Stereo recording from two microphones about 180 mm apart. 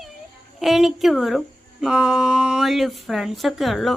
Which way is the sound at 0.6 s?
Centre (ahead or behind).